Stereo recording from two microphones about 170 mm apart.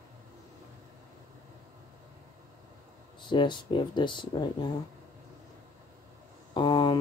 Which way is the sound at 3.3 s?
30° left (ahead or behind).